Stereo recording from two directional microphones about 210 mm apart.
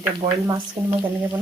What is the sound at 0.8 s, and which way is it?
Speech, 10° right (ahead or behind).